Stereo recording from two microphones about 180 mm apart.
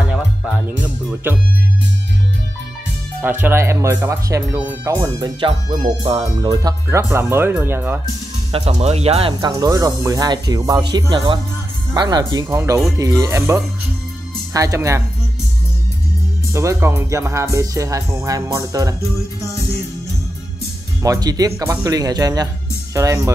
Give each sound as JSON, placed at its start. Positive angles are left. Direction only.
{"t": 3.2, "sound": "speech", "side_deg": -10}
{"t": 8.5, "sound": "speech", "side_deg": -30}
{"t": 9.5, "sound": "speech", "side_deg": -20}
{"t": 16.5, "sound": "speech", "side_deg": -15}
{"t": 21.0, "sound": "speech", "side_deg": -20}